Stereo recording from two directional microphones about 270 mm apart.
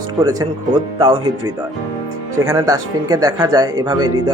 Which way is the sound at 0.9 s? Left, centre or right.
Centre.